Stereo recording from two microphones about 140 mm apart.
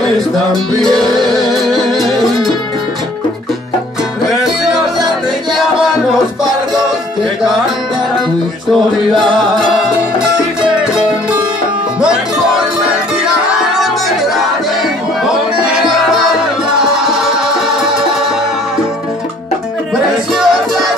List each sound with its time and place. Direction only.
0.7 s music: 5° left (ahead or behind)
4.3 s music: centre (ahead or behind)
6.4 s music: 30° right (ahead or behind)
10.6 s music: 5° right (ahead or behind)
13.7 s music: centre (ahead or behind)
16.2 s music: 5° right (ahead or behind)
20.3 s music: centre (ahead or behind)